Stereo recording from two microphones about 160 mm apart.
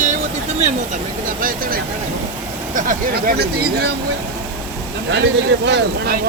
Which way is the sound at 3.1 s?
80° right.